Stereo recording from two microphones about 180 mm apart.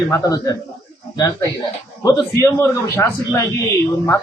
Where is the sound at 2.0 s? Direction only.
15° left (ahead or behind).